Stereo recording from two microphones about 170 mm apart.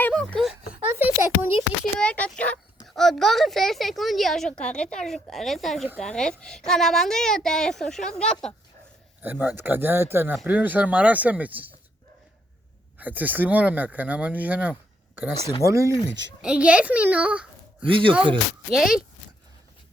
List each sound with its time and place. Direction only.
0.0 s a sound: 5° left (ahead or behind)
0.9 s a sound: 10° right (ahead or behind)
2.0 s a sound: 5° left (ahead or behind)
4.6 s a woman's voice: 5° left (ahead or behind)
9.2 s speech: 10° right (ahead or behind)
13.0 s speech: 10° right (ahead or behind)
16.4 s a child's voice: 5° right (ahead or behind)
17.8 s speech: 30° right (ahead or behind)
18.7 s a woman's voice: centre (ahead or behind)